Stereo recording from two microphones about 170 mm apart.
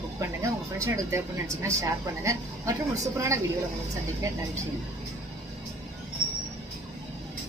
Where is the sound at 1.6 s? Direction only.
20° right (ahead or behind).